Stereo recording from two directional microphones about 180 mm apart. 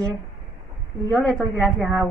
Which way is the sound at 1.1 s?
5° left (ahead or behind).